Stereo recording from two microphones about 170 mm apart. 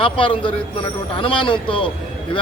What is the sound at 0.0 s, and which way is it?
Speech, 30° left (ahead or behind).